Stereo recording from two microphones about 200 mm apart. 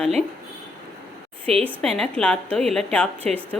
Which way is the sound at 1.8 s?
5° left (ahead or behind).